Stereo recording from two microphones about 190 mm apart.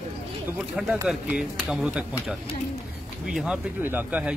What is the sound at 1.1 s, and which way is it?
Speech, 5° right (ahead or behind).